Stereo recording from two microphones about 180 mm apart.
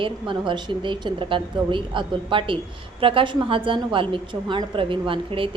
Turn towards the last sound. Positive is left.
turn(degrees=-30)  # may be behind; listen again after turning